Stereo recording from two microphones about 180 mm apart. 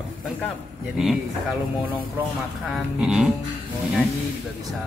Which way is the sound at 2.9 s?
5° right (ahead or behind).